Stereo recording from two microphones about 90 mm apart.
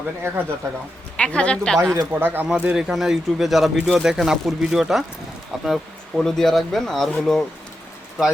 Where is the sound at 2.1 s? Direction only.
25° right (ahead or behind).